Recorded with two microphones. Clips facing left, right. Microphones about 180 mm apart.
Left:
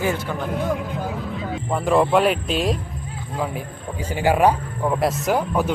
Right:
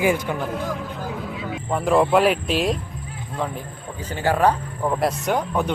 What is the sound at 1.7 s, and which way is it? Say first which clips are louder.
Speech: even; centre (ahead or behind).